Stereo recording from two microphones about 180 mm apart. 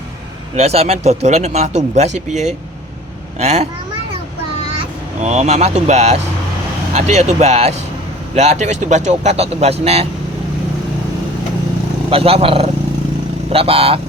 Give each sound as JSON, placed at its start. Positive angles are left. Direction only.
{"t": 0.6, "sound": "speech", "side_deg": -35}
{"t": 4.8, "sound": "speech", "side_deg": -40}
{"t": 12.1, "sound": "speech", "side_deg": -30}